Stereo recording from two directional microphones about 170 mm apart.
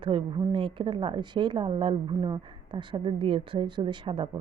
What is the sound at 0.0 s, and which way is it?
A woman's voice, 30° right (ahead or behind).